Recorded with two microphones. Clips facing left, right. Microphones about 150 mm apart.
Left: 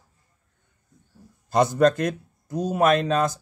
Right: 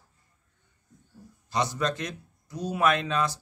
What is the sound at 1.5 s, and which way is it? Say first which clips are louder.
Speech: left 10 dB; 50° left (ahead or behind).